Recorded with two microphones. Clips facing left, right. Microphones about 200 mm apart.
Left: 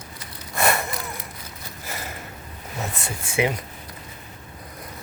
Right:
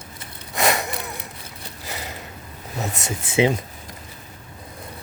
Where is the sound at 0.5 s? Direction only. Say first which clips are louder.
Right 1 dB; 15° right (ahead or behind).